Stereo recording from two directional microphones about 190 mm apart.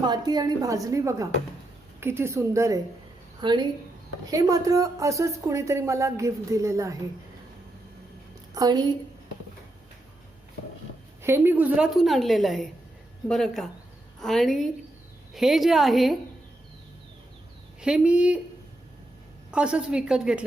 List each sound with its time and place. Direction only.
0.0 s a woman's voice: 20° right (ahead or behind)
8.5 s a woman's voice: 20° right (ahead or behind)
11.2 s a woman's voice: 10° right (ahead or behind)
17.7 s a woman's voice: 5° right (ahead or behind)
19.5 s a woman's voice: 5° right (ahead or behind)